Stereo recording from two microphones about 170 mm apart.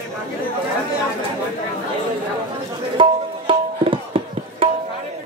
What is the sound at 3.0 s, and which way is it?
Tabla, 30° right (ahead or behind).